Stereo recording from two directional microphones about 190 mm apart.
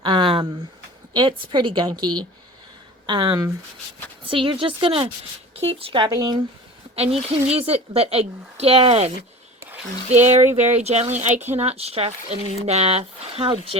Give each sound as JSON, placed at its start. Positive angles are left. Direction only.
{"t": 0.0, "sound": "a sound", "side_deg": -25}
{"t": 1.1, "sound": "a woman's voice", "side_deg": -25}
{"t": 6.9, "sound": "speech", "side_deg": -30}